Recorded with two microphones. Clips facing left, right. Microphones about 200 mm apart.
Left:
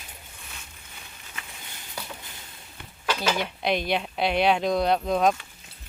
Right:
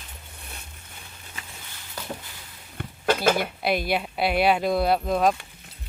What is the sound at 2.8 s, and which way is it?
Dishes, 55° right (ahead or behind).